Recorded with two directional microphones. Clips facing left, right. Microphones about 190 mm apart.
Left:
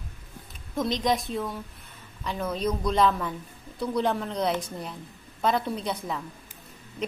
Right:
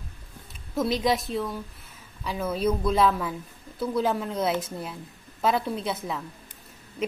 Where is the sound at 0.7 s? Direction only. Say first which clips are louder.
Right 1 dB; 5° right (ahead or behind).